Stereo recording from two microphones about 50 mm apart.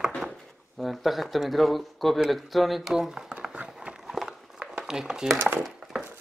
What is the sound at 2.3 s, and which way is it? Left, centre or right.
Speech, centre.